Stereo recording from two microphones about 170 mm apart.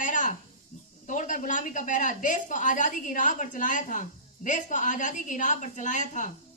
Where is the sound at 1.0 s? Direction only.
50° left (ahead or behind).